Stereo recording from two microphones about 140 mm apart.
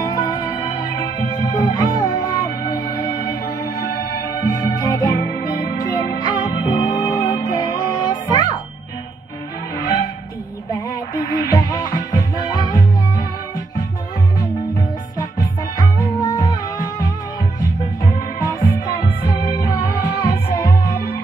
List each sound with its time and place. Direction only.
0.0 s music: 25° left (ahead or behind)
4.1 s music: 25° left (ahead or behind)
11.1 s music: 30° left (ahead or behind)
15.1 s music: 30° left (ahead or behind)